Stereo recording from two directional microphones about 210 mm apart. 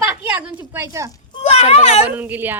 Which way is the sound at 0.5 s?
10° right (ahead or behind).